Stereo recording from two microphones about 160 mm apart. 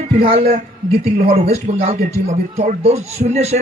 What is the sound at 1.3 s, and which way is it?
Speech, 40° right (ahead or behind).